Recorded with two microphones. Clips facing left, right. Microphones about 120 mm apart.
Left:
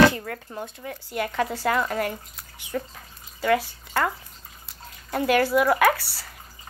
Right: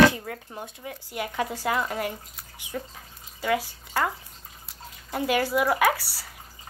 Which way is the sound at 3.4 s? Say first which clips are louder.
Left 4 dB; 10° right (ahead or behind).